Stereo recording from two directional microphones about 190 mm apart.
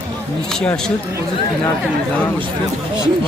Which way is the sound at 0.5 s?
5° left (ahead or behind).